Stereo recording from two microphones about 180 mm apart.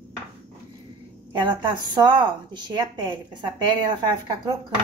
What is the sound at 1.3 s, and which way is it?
A woman's voice, 25° right (ahead or behind).